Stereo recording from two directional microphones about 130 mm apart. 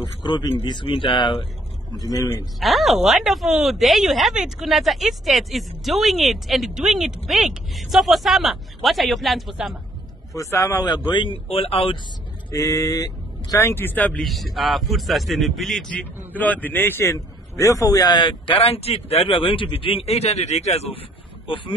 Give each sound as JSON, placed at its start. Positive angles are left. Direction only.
{"t": 0.2, "sound": "speech", "side_deg": 35}
{"t": 1.9, "sound": "a man's voice", "side_deg": 30}
{"t": 2.6, "sound": "speech", "side_deg": 0}
{"t": 10.3, "sound": "speech", "side_deg": 25}
{"t": 12.4, "sound": "speech", "side_deg": 25}
{"t": 14.2, "sound": "a man's voice", "side_deg": 0}